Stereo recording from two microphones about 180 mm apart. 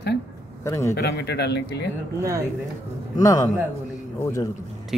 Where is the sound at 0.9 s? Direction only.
65° left (ahead or behind).